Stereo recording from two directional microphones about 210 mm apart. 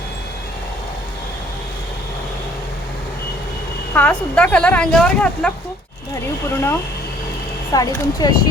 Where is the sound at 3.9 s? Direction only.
5° left (ahead or behind).